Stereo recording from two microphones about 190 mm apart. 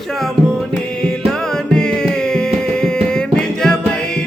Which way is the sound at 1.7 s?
5° left (ahead or behind).